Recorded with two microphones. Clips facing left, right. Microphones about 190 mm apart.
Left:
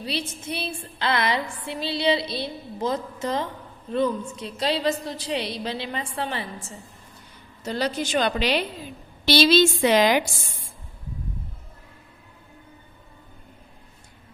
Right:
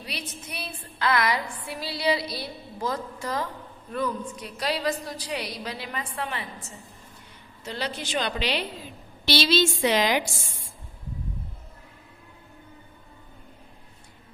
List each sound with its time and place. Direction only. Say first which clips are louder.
0.0 s a woman's voice: left 7 dB; 30° left (ahead or behind)
7.6 s a woman's voice: left 6 dB; 40° left (ahead or behind)